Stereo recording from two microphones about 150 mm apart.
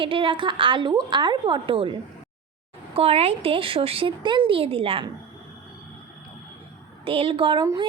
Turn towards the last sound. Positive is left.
turn(degrees=-35)  # may be behind; listen again after turning